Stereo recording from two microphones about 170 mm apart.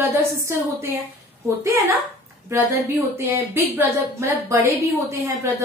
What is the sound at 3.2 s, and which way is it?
A woman's voice, 10° right (ahead or behind).